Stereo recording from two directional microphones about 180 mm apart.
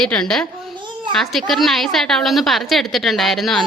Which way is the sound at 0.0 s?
5° left (ahead or behind).